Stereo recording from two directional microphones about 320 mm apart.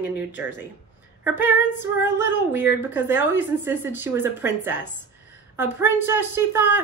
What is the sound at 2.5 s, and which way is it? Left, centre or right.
A woman's voice, centre.